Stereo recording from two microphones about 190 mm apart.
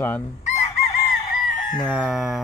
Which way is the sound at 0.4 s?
40° left (ahead or behind).